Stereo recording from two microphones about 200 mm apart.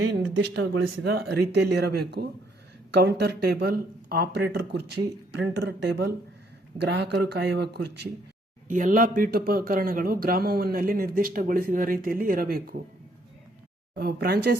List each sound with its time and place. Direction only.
0.0 s speech: 65° right (ahead or behind)
1.1 s speech: 55° right (ahead or behind)
8.6 s speech: 40° right (ahead or behind)
13.9 s speech: 50° right (ahead or behind)